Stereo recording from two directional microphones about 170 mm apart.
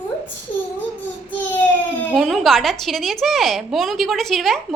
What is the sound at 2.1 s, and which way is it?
A woman's voice, centre (ahead or behind).